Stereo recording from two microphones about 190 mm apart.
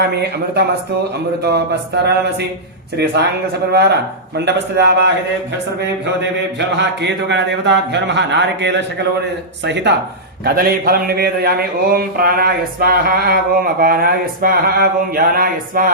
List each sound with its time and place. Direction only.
1.4 s speech: 60° right (ahead or behind)
6.6 s speech: 65° right (ahead or behind)
10.4 s speech: 50° right (ahead or behind)